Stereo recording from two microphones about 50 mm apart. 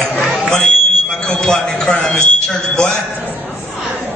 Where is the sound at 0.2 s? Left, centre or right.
Centre.